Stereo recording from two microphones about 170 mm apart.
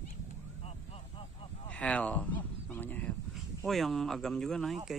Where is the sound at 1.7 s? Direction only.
5° left (ahead or behind).